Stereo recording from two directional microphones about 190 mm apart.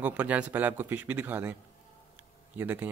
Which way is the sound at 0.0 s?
10° right (ahead or behind).